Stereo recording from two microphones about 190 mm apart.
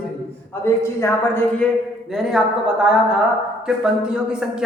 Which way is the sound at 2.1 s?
5° right (ahead or behind).